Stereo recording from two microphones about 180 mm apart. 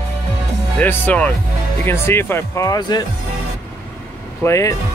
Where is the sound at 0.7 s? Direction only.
10° left (ahead or behind).